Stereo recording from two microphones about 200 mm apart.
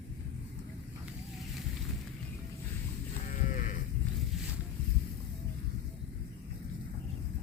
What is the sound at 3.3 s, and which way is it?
Livestock, 40° left (ahead or behind).